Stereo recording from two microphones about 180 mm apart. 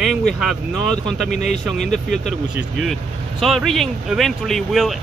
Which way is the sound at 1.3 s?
40° left (ahead or behind).